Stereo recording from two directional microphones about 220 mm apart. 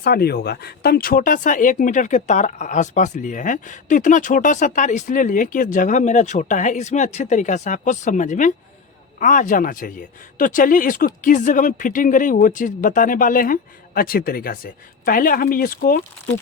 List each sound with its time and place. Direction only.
0.0 s speech: 45° left (ahead or behind)